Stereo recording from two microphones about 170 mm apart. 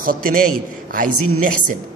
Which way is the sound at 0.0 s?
55° right (ahead or behind).